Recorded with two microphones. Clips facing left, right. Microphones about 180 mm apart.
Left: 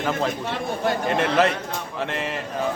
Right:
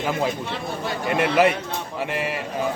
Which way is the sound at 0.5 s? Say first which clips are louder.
Left 4 dB; 50° left (ahead or behind).